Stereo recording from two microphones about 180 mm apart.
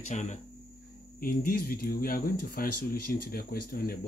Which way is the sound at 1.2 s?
55° left (ahead or behind).